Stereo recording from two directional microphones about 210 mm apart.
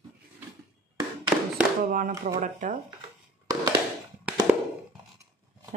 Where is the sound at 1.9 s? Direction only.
40° right (ahead or behind).